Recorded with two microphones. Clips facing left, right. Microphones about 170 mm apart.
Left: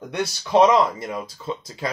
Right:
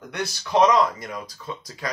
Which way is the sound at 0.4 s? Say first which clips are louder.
Left 2 dB; 20° left (ahead or behind).